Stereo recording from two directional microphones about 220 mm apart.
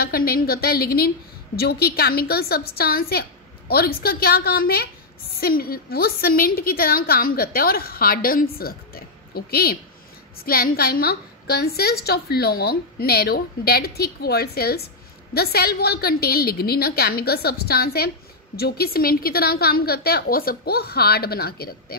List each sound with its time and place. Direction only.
0.0 s a woman's voice: 45° left (ahead or behind)